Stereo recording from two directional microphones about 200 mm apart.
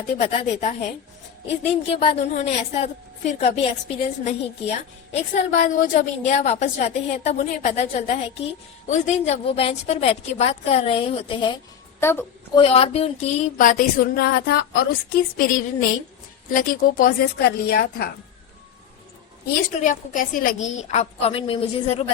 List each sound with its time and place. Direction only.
0.2 s a woman's voice: 30° left (ahead or behind)
11.9 s a woman's voice: 10° left (ahead or behind)
12.5 s a woman's voice: 30° left (ahead or behind); by 18.1 s 50° left (ahead or behind)
19.8 s a woman's voice: 40° left (ahead or behind)